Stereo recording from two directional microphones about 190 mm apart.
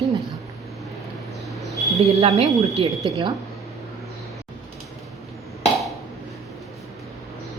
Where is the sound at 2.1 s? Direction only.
35° right (ahead or behind).